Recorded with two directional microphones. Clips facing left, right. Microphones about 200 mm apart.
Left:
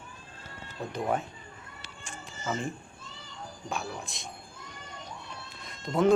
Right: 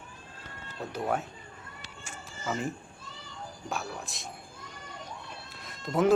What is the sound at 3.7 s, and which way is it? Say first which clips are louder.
Speech: left 1 dB; centre (ahead or behind).